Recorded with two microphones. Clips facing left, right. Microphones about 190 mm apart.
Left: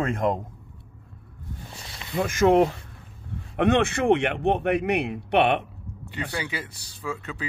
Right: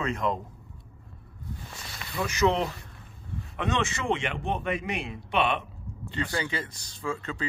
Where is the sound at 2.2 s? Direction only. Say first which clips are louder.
Left 6 dB; 50° left (ahead or behind).